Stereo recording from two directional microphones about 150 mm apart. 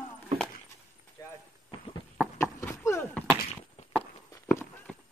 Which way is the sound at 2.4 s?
20° left (ahead or behind).